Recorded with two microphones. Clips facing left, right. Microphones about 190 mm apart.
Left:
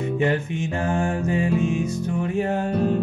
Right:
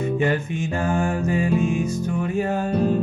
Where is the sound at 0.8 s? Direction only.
20° left (ahead or behind).